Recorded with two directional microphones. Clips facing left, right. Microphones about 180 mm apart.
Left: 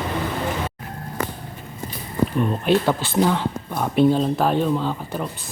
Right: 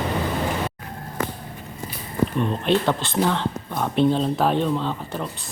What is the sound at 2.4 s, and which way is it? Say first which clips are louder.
Speech: left 2 dB; 5° left (ahead or behind).